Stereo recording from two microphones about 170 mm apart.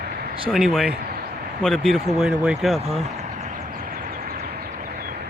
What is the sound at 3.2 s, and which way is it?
Vehicle, 40° right (ahead or behind).